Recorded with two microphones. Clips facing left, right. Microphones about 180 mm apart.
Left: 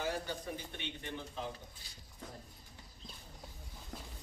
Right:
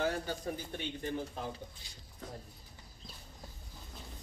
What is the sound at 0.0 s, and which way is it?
A man's voice, 45° right (ahead or behind).